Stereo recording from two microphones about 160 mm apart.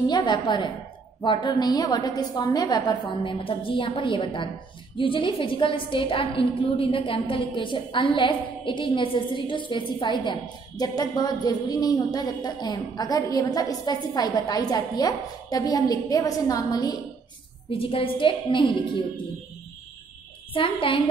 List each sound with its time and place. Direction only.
0.0 s a woman's voice: 30° left (ahead or behind)
17.6 s a woman's voice: 35° left (ahead or behind)
20.5 s a woman's voice: 35° left (ahead or behind)